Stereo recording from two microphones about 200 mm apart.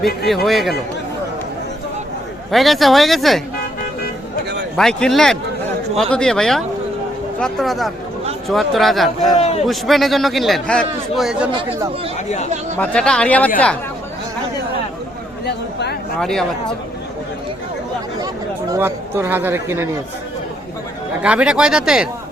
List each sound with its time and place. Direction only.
0.4 s a man's voice: centre (ahead or behind)
2.5 s a man's voice: centre (ahead or behind)
4.8 s a man's voice: 5° left (ahead or behind)
9.4 s a man's voice: 30° left (ahead or behind)
9.6 s a man's voice: centre (ahead or behind)
12.8 s a man's voice: 5° left (ahead or behind)
15.4 s speech: 55° left (ahead or behind)
16.2 s a man's voice: centre (ahead or behind)
18.7 s speech: 10° right (ahead or behind)
21.2 s a man's voice: 5° right (ahead or behind)